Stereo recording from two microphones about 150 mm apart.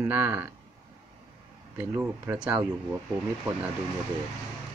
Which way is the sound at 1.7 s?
15° right (ahead or behind).